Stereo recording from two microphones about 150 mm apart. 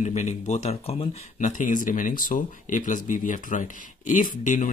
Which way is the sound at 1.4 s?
60° left (ahead or behind).